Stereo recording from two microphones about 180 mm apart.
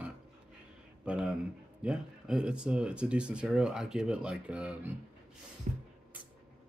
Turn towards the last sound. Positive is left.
turn(degrees=-40)  # may be behind; listen again after turning